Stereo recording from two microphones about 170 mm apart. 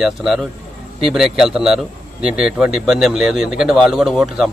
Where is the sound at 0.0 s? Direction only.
Centre (ahead or behind).